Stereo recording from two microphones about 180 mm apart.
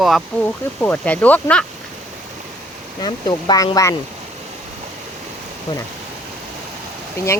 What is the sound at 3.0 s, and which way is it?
Speech, 25° left (ahead or behind).